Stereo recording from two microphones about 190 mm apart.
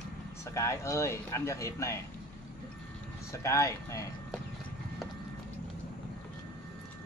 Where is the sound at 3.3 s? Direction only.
15° left (ahead or behind).